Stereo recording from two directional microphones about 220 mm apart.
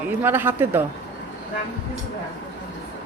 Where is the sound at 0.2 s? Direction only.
10° right (ahead or behind).